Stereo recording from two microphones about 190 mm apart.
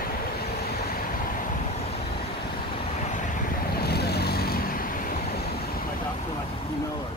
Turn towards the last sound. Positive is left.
turn(degrees=45)  # may be behind; listen again after turning